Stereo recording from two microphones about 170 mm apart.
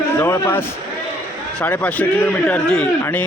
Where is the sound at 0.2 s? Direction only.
15° left (ahead or behind).